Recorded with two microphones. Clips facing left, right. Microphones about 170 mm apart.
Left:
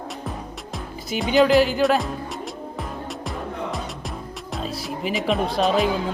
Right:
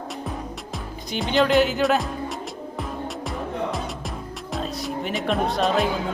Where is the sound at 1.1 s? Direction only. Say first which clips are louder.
Left 3 dB; centre (ahead or behind).